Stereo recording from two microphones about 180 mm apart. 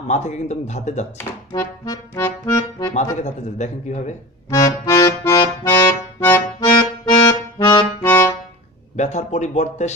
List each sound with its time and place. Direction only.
0.1 s speech: 40° left (ahead or behind)
1.5 s accordion: 20° left (ahead or behind)
2.9 s speech: 40° left (ahead or behind)
4.4 s accordion: 20° left (ahead or behind)
6.2 s accordion: 15° left (ahead or behind)
8.0 s music: 15° left (ahead or behind)
9.0 s speech: 40° left (ahead or behind)